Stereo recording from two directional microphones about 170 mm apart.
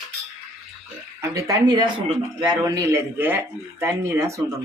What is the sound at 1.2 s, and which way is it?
Speech, 20° right (ahead or behind).